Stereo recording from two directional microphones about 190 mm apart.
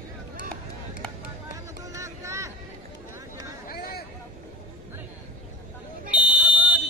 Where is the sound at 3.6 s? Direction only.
55° left (ahead or behind).